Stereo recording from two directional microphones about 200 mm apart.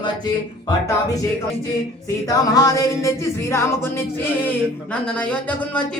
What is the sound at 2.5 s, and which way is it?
Music, 20° left (ahead or behind).